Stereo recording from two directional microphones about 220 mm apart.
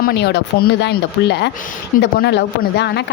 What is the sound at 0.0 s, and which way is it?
Speech, 50° left (ahead or behind).